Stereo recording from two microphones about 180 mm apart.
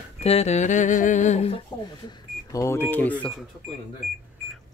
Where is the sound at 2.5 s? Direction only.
15° left (ahead or behind).